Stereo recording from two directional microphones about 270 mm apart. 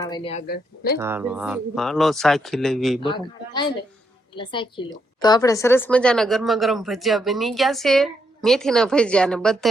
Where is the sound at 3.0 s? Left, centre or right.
Centre.